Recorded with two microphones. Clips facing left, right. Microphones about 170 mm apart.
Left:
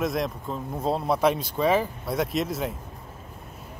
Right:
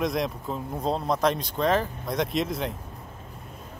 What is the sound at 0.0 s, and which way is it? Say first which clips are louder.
Speech: even; centre (ahead or behind).